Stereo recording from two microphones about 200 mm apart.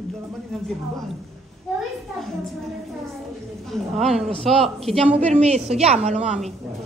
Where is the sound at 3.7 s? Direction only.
Centre (ahead or behind).